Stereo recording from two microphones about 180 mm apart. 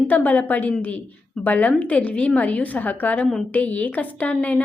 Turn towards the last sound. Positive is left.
turn(degrees=10)  # may be behind; listen again after turning